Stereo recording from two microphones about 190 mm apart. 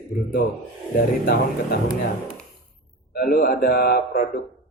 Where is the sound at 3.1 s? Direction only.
45° left (ahead or behind).